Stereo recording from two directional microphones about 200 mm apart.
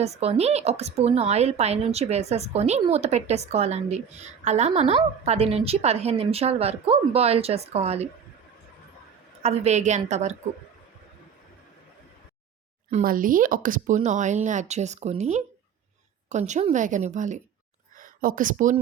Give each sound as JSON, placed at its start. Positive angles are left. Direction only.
{"t": 0.0, "sound": "a woman's voice", "side_deg": -30}
{"t": 9.4, "sound": "a woman's voice", "side_deg": -35}
{"t": 12.9, "sound": "a woman's voice", "side_deg": -45}